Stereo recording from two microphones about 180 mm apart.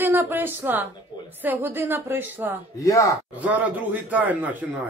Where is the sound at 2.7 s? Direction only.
20° left (ahead or behind).